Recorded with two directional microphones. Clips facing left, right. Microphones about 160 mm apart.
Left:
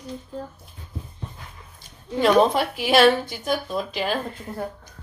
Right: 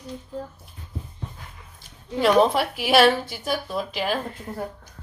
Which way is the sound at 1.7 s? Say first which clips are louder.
Left 1 dB; 5° right (ahead or behind).